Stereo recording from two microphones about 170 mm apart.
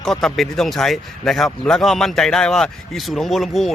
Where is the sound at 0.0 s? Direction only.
Centre (ahead or behind).